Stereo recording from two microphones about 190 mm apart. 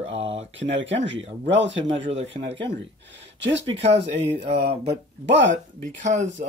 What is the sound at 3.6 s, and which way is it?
Speech, 35° right (ahead or behind).